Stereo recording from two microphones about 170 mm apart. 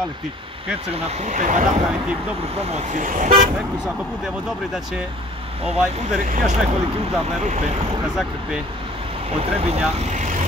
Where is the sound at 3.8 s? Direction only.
5° right (ahead or behind).